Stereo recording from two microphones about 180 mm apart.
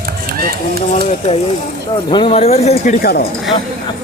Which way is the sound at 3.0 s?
60° left (ahead or behind).